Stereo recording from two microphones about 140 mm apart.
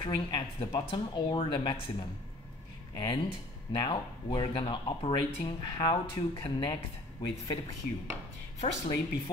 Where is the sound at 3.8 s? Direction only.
35° left (ahead or behind).